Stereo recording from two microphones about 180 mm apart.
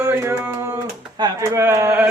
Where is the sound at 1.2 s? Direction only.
15° right (ahead or behind).